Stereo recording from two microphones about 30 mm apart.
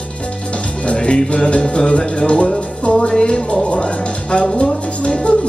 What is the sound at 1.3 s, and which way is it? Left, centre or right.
Speech, left.